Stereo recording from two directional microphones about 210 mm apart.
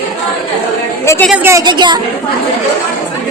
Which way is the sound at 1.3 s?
10° right (ahead or behind).